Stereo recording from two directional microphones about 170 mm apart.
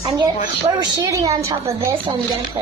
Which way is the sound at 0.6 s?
25° right (ahead or behind).